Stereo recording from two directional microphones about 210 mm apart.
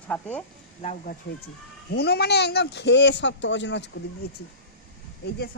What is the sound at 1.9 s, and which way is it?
Speech, 50° left (ahead or behind).